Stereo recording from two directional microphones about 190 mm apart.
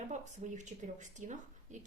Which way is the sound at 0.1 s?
40° right (ahead or behind).